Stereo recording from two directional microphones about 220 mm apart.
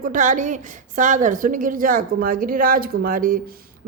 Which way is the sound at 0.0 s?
35° right (ahead or behind).